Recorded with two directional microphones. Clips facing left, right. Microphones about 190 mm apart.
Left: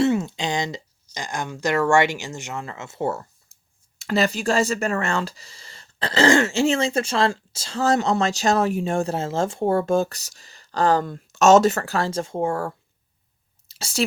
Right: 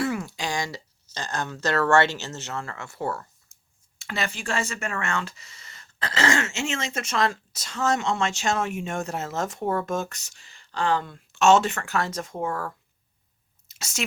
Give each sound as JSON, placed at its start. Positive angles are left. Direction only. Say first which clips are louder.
{"t": 0.0, "sound": "speech", "louder": "left 7 dB", "side_deg": 25}
{"t": 3.9, "sound": "speech", "louder": "left 9 dB", "side_deg": 40}
{"t": 13.7, "sound": "a sound", "louder": "left 7 dB", "side_deg": 30}